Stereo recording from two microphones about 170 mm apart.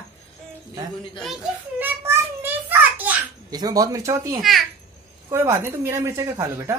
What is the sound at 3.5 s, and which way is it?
Speech, 25° right (ahead or behind).